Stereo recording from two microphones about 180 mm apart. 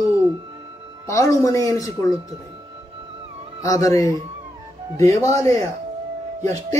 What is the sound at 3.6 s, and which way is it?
A man's voice, 20° left (ahead or behind).